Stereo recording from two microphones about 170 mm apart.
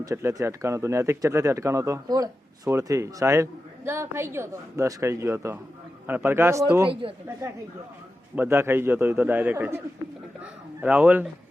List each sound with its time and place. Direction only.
0.0 s speech: 15° right (ahead or behind)
6.8 s speech: 30° right (ahead or behind)
8.4 s speech: 15° right (ahead or behind)